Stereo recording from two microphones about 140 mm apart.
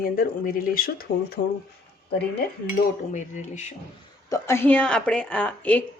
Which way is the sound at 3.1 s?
60° left (ahead or behind).